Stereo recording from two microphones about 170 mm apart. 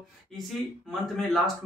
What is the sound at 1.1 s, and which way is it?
Speech, centre (ahead or behind).